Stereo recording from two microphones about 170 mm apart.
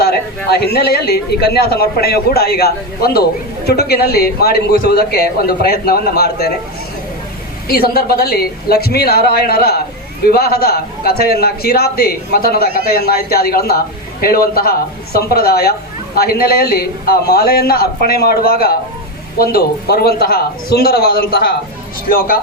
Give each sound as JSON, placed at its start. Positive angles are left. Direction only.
{"t": 0.0, "sound": "speech", "side_deg": 70}
{"t": 7.7, "sound": "a man's voice", "side_deg": 65}